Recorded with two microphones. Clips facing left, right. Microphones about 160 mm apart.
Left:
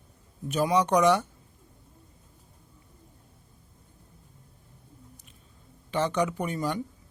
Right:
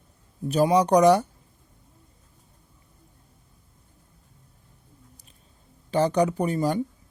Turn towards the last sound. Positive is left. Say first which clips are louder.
# right 6 dB
turn(degrees=-35)  # may be behind; listen again after turning